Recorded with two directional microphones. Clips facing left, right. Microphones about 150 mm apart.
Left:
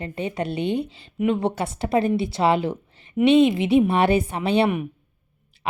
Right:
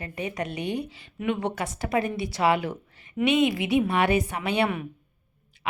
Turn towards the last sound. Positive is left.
turn(degrees=30)  # may be behind; listen again after turning